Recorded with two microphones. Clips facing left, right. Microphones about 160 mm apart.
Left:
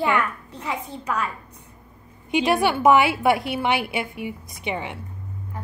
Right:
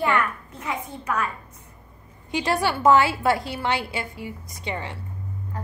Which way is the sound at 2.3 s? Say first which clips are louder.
Left 4 dB; 20° left (ahead or behind).